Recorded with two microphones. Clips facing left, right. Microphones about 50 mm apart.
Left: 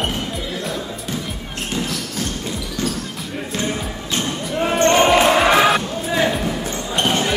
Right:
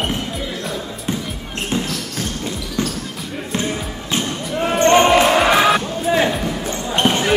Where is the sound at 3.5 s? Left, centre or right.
Centre.